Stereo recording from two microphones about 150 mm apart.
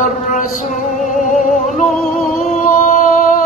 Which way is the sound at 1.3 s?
60° left (ahead or behind).